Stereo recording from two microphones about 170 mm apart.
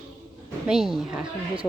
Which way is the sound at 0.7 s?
Centre (ahead or behind).